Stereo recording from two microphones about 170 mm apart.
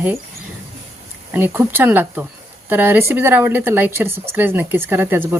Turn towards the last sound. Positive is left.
turn(degrees=-15)  # may be behind; listen again after turning